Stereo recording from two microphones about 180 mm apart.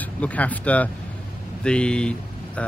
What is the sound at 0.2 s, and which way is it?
Speech, 10° left (ahead or behind).